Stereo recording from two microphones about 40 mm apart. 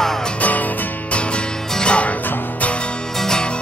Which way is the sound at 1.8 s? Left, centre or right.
Left.